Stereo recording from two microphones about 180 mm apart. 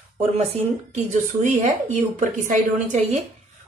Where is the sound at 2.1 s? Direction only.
45° right (ahead or behind).